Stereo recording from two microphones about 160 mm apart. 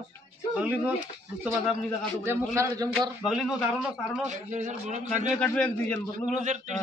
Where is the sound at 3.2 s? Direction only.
5° right (ahead or behind).